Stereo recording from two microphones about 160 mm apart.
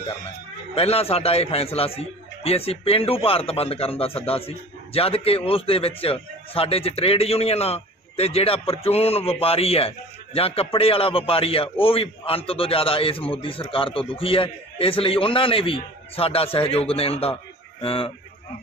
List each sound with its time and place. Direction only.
0.7 s a man's voice: 40° left (ahead or behind)